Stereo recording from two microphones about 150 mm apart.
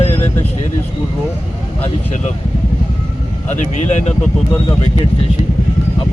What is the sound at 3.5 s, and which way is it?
Speech, 50° left (ahead or behind).